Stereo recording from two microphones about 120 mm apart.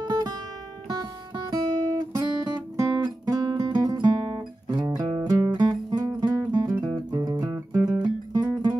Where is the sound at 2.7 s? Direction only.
30° right (ahead or behind).